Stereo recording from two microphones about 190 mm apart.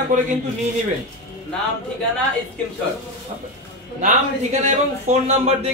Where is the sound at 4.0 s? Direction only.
35° right (ahead or behind).